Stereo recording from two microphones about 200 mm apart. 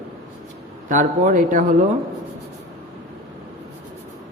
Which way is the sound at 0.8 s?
40° right (ahead or behind).